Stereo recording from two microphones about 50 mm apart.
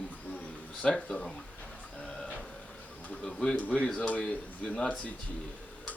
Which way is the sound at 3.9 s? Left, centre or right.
Left.